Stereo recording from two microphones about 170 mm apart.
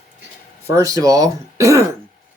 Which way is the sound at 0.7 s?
20° right (ahead or behind).